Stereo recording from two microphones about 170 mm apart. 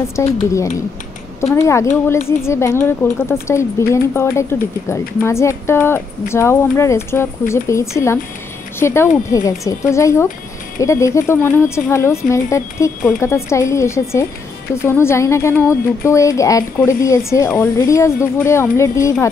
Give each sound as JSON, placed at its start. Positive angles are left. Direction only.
{"t": 0.1, "sound": "a woman's voice", "side_deg": 15}